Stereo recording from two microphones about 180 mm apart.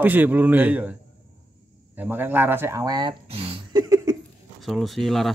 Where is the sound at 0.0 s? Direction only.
10° right (ahead or behind).